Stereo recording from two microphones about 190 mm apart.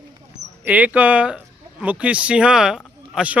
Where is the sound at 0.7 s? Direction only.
10° right (ahead or behind).